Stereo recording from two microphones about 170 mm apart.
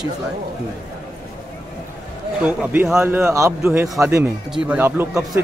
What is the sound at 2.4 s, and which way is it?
Speech, 10° right (ahead or behind).